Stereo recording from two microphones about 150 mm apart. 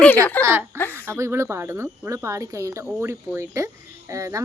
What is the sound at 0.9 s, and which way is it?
Speech, 15° right (ahead or behind).